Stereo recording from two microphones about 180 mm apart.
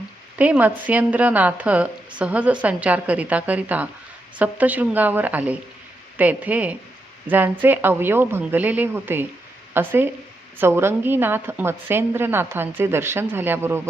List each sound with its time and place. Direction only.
0.3 s a woman's voice: 10° right (ahead or behind)